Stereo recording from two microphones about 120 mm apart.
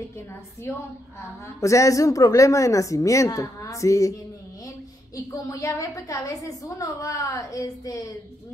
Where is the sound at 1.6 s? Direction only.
25° left (ahead or behind).